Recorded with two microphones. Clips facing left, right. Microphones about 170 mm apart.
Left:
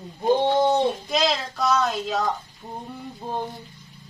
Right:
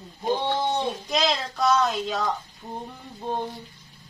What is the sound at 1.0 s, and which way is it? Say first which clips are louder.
Speech: left 2 dB; centre (ahead or behind).